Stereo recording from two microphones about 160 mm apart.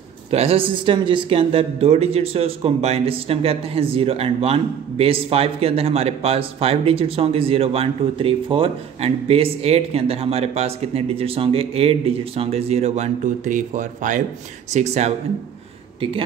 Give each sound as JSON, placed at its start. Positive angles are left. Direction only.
{"t": 0.3, "sound": "speech", "side_deg": -40}